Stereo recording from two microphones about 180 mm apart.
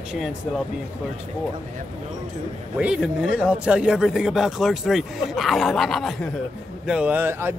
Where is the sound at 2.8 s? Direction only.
5° right (ahead or behind).